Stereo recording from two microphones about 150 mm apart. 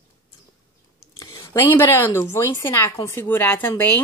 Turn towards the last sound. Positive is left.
turn(degrees=10)  # may be behind; listen again after turning